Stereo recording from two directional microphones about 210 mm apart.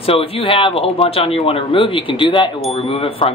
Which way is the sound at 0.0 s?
25° left (ahead or behind).